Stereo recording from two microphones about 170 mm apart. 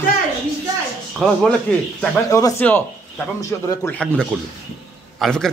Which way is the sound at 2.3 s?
20° left (ahead or behind).